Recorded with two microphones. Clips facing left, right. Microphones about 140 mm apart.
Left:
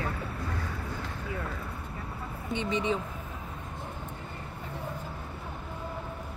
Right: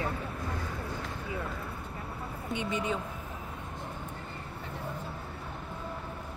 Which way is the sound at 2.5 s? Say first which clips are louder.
Left 3 dB; 5° right (ahead or behind).